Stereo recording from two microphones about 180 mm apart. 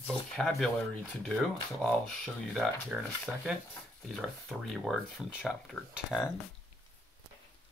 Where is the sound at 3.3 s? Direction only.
5° left (ahead or behind).